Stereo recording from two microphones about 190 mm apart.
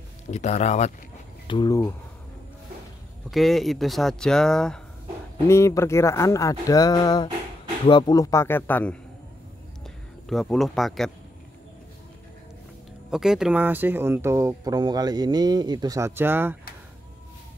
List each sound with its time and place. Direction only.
0.3 s speech: 35° left (ahead or behind)
1.5 s speech: 20° left (ahead or behind)
3.3 s speech: centre (ahead or behind)
5.5 s speech: 15° left (ahead or behind)
10.2 s speech: centre (ahead or behind)
13.1 s speech: centre (ahead or behind)